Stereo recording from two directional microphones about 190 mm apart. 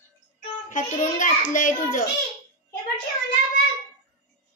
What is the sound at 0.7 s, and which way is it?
A child's voice, 40° left (ahead or behind).